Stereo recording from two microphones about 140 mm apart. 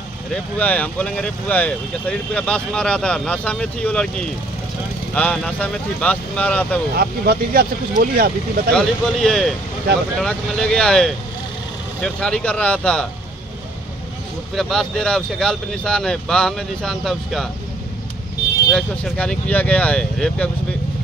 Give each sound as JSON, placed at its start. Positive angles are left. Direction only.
{"t": 0.3, "sound": "speech", "side_deg": 10}
{"t": 5.1, "sound": "speech", "side_deg": 5}
{"t": 7.0, "sound": "speech", "side_deg": -90}
{"t": 8.7, "sound": "speech", "side_deg": 5}
{"t": 14.5, "sound": "speech", "side_deg": 0}
{"t": 18.7, "sound": "speech", "side_deg": 5}